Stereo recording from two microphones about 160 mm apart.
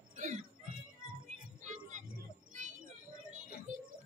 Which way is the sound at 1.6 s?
50° right (ahead or behind).